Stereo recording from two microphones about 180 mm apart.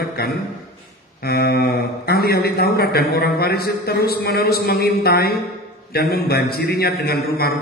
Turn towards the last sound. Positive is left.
turn(degrees=60)  # may be behind; listen again after turning